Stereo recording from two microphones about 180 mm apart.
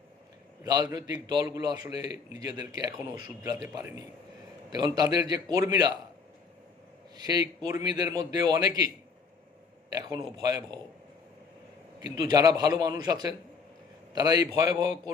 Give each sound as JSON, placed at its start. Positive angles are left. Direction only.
{"t": 0.6, "sound": "a man's voice", "side_deg": -20}
{"t": 7.2, "sound": "a man's voice", "side_deg": -20}
{"t": 9.9, "sound": "a man's voice", "side_deg": -20}
{"t": 11.9, "sound": "a man's voice", "side_deg": -20}